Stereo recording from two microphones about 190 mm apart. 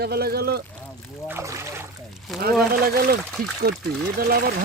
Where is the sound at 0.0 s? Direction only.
55° right (ahead or behind).